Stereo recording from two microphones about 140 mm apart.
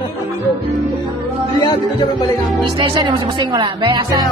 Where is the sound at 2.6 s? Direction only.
35° right (ahead or behind).